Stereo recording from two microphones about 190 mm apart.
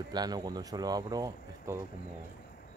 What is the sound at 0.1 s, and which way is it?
Speech, 20° right (ahead or behind).